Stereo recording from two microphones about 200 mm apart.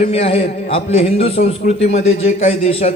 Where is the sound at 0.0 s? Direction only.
30° left (ahead or behind).